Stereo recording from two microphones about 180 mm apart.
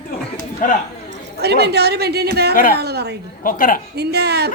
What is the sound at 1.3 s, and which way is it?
A woman's voice, 65° right (ahead or behind).